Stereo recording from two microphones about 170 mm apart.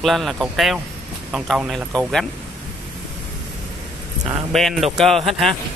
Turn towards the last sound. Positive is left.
turn(degrees=0)  # may be behind; listen again after turning